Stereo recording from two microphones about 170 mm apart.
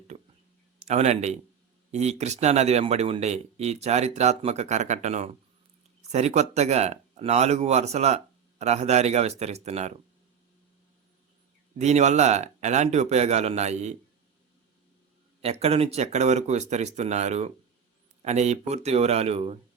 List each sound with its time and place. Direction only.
0.9 s speech: 40° right (ahead or behind)
11.8 s speech: 40° right (ahead or behind)
15.4 s speech: 35° right (ahead or behind)